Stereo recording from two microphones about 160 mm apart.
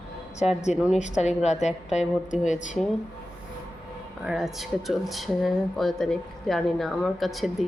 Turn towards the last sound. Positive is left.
turn(degrees=0)  # may be behind; listen again after turning